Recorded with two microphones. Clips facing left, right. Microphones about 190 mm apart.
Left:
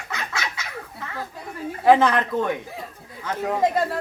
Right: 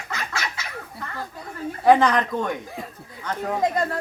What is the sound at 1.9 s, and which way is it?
Speech, 5° left (ahead or behind).